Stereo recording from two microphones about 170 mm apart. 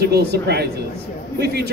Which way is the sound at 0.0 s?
75° right (ahead or behind).